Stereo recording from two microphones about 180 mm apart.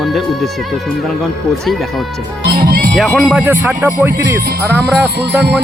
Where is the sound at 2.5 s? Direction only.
60° right (ahead or behind).